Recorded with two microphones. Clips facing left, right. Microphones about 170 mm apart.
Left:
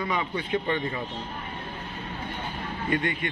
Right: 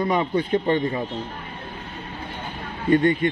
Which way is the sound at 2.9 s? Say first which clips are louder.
Right 10 dB; 35° right (ahead or behind).